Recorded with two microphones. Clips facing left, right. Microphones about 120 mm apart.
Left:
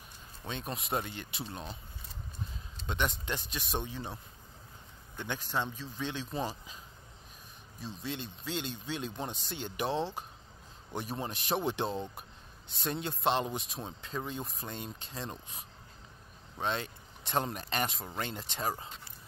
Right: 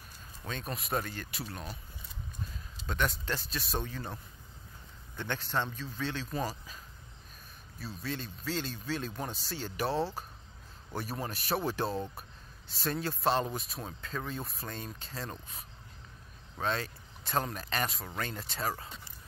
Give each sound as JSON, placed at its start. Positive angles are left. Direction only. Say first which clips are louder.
{"t": 0.5, "sound": "a man's voice", "louder": "even", "side_deg": 25}
{"t": 2.9, "sound": "speech", "louder": "right 1 dB", "side_deg": 20}
{"t": 7.8, "sound": "a man's voice", "louder": "right 1 dB", "side_deg": 20}